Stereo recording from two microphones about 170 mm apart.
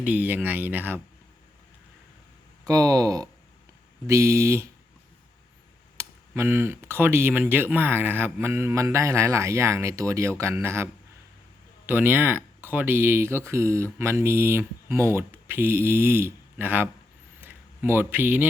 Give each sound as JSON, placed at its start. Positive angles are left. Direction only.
{"t": 0.0, "sound": "speech", "side_deg": -10}
{"t": 2.6, "sound": "speech", "side_deg": -20}
{"t": 6.0, "sound": "speech", "side_deg": -15}
{"t": 11.9, "sound": "speech", "side_deg": -10}
{"t": 17.4, "sound": "a sound", "side_deg": -10}